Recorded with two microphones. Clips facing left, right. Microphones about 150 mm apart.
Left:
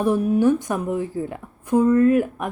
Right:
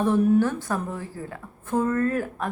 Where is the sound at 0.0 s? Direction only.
15° left (ahead or behind).